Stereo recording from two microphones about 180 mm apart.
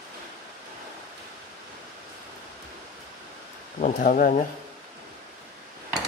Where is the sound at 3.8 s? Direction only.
45° left (ahead or behind).